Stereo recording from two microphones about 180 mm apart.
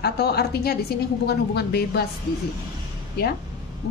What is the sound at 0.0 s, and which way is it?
A woman's voice, 60° left (ahead or behind).